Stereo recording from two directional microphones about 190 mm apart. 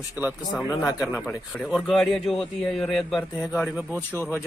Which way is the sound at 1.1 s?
Centre (ahead or behind).